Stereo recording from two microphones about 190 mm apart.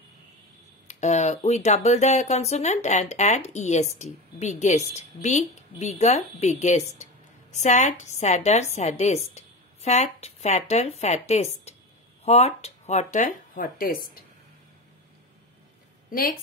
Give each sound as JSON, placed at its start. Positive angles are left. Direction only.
{"t": 0.8, "sound": "speech", "side_deg": 35}
{"t": 16.1, "sound": "speech", "side_deg": 50}